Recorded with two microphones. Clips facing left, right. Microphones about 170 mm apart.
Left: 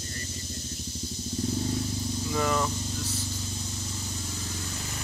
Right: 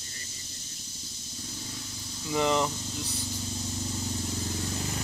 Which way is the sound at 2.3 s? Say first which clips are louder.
Right 2 dB; 20° right (ahead or behind).